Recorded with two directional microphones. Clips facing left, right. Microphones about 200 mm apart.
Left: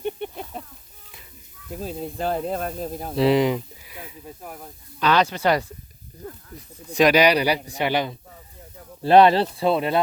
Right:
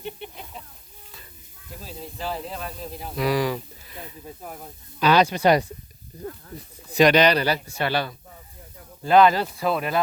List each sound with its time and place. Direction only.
0.0 s a sound: 50° left (ahead or behind)
1.8 s speech: 50° left (ahead or behind)
3.2 s speech: 25° left (ahead or behind); by 4.7 s centre (ahead or behind)
4.9 s speech: 10° right (ahead or behind)
6.9 s speech: 5° left (ahead or behind)
9.0 s speech: 30° left (ahead or behind)